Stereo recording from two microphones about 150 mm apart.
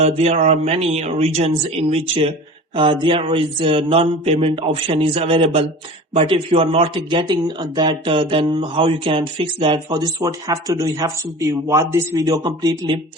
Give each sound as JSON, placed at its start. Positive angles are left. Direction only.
{"t": 0.0, "sound": "speech", "side_deg": -45}